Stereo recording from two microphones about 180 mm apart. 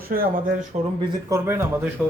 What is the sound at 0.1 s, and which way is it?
Speech, 50° right (ahead or behind).